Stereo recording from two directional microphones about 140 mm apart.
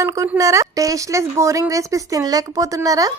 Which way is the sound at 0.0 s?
25° right (ahead or behind).